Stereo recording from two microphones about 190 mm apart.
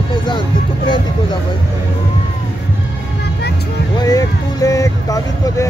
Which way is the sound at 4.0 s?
20° left (ahead or behind).